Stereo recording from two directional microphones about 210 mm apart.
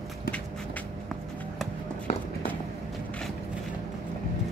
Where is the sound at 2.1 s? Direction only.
30° left (ahead or behind).